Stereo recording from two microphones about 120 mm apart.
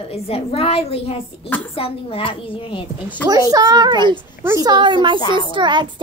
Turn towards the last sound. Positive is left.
turn(degrees=-40)  # may be behind; listen again after turning